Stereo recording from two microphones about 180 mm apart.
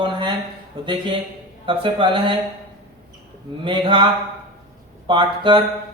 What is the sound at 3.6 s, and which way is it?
Speech, 25° right (ahead or behind).